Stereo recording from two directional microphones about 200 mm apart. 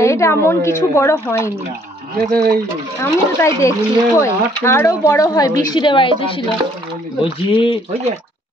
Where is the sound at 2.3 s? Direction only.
50° right (ahead or behind).